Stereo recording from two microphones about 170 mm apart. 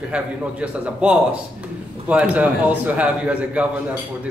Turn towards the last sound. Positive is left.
turn(degrees=-10)  # may be behind; listen again after turning